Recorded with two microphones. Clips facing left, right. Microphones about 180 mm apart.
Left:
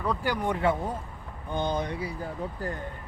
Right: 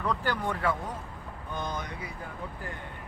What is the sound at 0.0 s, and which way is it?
Speech, 10° left (ahead or behind).